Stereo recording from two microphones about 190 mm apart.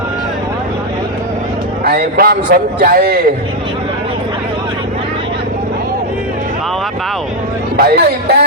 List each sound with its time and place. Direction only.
1.8 s a man's voice: 55° right (ahead or behind)
7.8 s speech: 55° right (ahead or behind)